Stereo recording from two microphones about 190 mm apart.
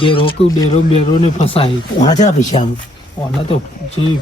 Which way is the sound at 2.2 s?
35° left (ahead or behind).